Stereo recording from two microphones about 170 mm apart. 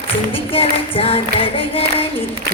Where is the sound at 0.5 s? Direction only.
35° left (ahead or behind).